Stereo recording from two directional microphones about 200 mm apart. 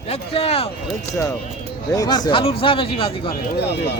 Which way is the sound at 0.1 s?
30° left (ahead or behind).